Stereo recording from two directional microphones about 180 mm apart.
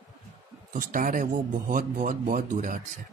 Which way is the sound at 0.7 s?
50° right (ahead or behind).